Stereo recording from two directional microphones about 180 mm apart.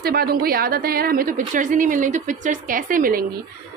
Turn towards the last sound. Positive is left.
turn(degrees=-50)  # may be behind; listen again after turning